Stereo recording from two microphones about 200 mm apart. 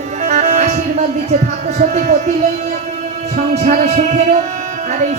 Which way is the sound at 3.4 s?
40° right (ahead or behind).